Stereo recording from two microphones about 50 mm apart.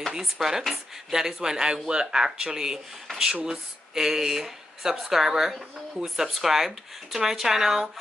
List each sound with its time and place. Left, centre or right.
0.1 s speech: centre
3.1 s a sound: centre
3.4 s speech: centre